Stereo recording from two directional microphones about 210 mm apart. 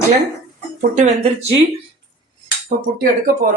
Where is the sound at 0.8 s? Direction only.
35° right (ahead or behind).